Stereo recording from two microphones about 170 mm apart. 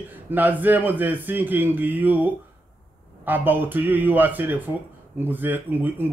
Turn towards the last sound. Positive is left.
turn(degrees=-10)  # may be behind; listen again after turning